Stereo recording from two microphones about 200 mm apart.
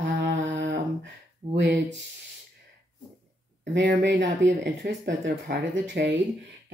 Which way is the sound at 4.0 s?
65° right (ahead or behind).